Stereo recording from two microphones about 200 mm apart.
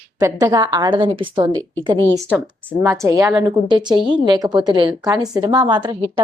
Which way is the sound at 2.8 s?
15° right (ahead or behind).